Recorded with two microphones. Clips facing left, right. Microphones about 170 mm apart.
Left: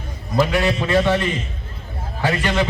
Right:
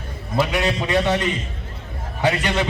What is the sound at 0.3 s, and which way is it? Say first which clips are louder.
Speech: left 2 dB; 20° right (ahead or behind).